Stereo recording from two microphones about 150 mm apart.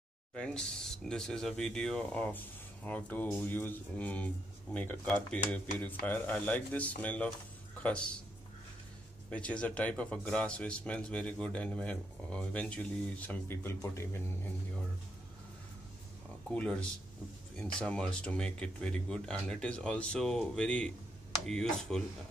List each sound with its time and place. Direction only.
0.3 s speech: 5° left (ahead or behind)
9.3 s speech: 5° left (ahead or behind)
16.4 s speech: 5° left (ahead or behind)